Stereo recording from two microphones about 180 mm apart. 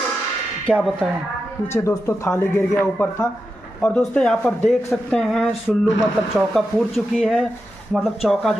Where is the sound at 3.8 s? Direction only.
5° left (ahead or behind).